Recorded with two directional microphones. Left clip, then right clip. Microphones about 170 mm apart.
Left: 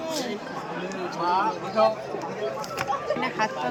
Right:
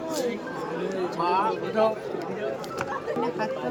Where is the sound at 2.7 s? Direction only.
10° left (ahead or behind).